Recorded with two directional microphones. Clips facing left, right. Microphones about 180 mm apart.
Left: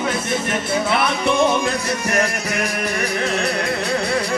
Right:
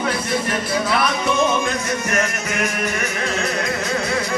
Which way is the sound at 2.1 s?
35° left (ahead or behind).